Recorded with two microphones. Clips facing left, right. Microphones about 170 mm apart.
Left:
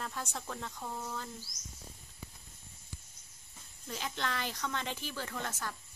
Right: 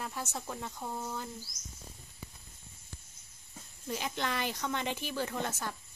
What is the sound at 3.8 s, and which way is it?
Speech, 15° right (ahead or behind).